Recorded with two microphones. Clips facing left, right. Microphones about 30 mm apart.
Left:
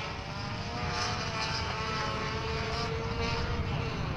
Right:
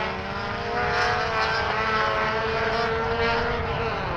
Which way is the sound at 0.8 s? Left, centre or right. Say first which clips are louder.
Right 11 dB; right.